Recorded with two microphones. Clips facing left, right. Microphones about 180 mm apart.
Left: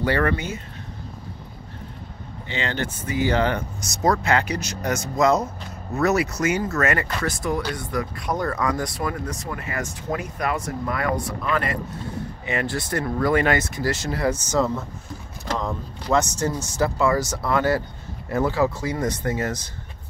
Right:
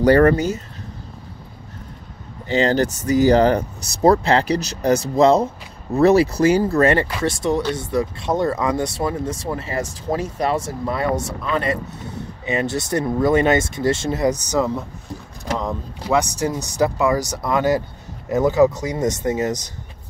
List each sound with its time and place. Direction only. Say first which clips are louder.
0.0 s speech: right 9 dB; 40° right (ahead or behind)
2.4 s speech: right 10 dB; 40° right (ahead or behind)
12.4 s speech: right 5 dB; 20° right (ahead or behind)